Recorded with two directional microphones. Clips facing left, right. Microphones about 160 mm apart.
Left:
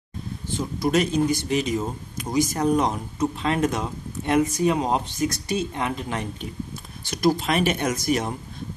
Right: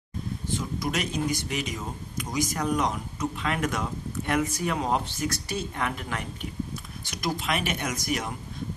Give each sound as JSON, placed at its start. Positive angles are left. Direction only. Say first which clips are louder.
{"t": 0.6, "sound": "speech", "louder": "left 9 dB", "side_deg": 30}
{"t": 7.1, "sound": "speech", "louder": "left 8 dB", "side_deg": 35}